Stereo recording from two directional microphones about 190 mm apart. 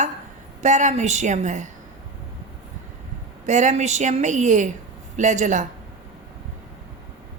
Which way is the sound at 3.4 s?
40° right (ahead or behind).